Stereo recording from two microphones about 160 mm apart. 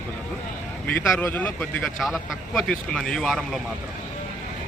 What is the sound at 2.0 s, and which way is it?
A man's voice, centre (ahead or behind).